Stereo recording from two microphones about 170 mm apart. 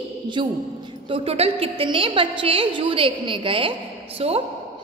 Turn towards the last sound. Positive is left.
turn(degrees=-35)  # may be behind; listen again after turning